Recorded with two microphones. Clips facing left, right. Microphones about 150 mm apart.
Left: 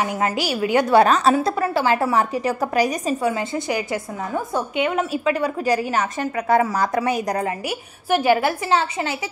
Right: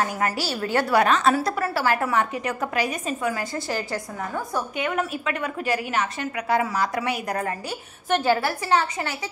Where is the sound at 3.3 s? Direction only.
20° left (ahead or behind); by 7.2 s 40° left (ahead or behind).